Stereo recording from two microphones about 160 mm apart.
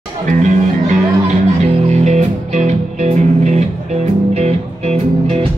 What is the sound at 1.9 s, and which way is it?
Music, 45° right (ahead or behind).